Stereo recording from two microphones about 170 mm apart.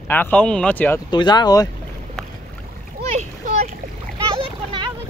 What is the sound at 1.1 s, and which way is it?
Speech, 25° left (ahead or behind).